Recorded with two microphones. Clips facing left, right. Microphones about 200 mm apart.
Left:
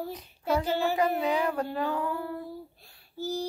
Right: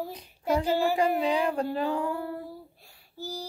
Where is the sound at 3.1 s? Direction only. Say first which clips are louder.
Left 5 dB; 10° right (ahead or behind).